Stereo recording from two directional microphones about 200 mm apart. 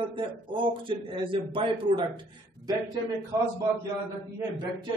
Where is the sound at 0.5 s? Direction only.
25° right (ahead or behind).